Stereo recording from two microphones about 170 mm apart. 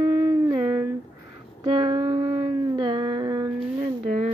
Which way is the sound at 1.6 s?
30° right (ahead or behind).